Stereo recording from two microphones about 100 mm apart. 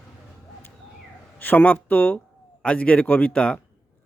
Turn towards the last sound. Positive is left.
turn(degrees=10)  # may be behind; listen again after turning